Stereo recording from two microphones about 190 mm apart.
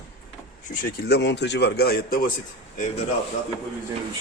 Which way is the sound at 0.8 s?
55° left (ahead or behind).